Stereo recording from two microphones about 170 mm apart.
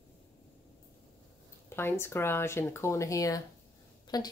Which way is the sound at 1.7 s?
15° left (ahead or behind).